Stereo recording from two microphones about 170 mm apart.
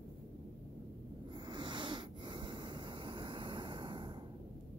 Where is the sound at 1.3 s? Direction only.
25° right (ahead or behind).